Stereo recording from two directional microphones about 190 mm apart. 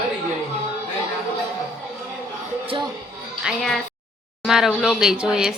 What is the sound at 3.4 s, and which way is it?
A woman's voice, centre (ahead or behind).